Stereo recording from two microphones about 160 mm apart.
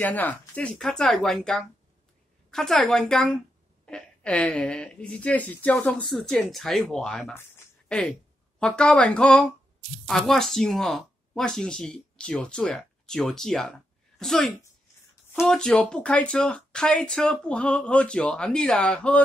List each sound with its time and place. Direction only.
0.0 s speech: 10° left (ahead or behind)
7.5 s a sound: 5° left (ahead or behind)
8.5 s speech: 5° left (ahead or behind)